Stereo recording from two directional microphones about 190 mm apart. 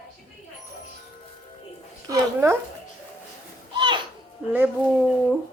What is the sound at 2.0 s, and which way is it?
Speech, 15° right (ahead or behind).